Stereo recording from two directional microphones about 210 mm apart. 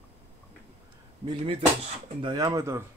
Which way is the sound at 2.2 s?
20° right (ahead or behind).